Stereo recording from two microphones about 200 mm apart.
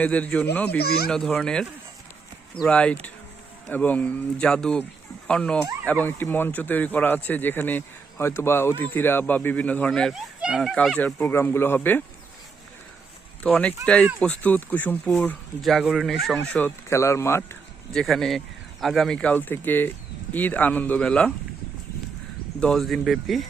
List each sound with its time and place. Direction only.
0.0 s speech: 5° left (ahead or behind)
0.8 s speech: 50° left (ahead or behind)
1.0 s speech: centre (ahead or behind)
2.6 s speech: 5° left (ahead or behind)
13.4 s speech: 5° left (ahead or behind)
17.9 s speech: centre (ahead or behind)
22.6 s speech: centre (ahead or behind)